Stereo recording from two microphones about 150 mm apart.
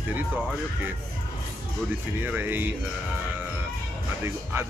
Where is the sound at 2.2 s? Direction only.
15° right (ahead or behind).